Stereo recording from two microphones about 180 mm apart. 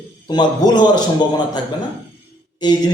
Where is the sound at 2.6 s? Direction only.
25° left (ahead or behind).